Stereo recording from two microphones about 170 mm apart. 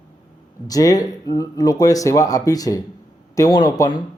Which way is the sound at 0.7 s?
20° left (ahead or behind).